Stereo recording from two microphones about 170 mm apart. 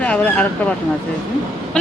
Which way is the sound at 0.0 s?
10° left (ahead or behind).